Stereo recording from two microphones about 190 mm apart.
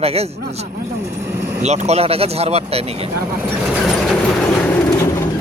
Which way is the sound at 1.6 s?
35° right (ahead or behind).